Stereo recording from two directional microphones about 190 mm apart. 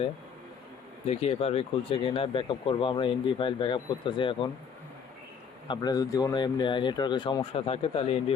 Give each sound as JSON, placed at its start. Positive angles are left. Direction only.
{"t": 1.0, "sound": "speech", "side_deg": 30}
{"t": 5.6, "sound": "speech", "side_deg": 20}